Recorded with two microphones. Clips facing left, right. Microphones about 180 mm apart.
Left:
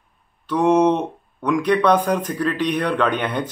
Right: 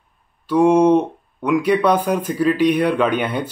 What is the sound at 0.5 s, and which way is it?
Speech, 10° right (ahead or behind).